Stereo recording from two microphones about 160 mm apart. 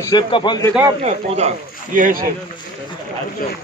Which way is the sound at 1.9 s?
60° right (ahead or behind).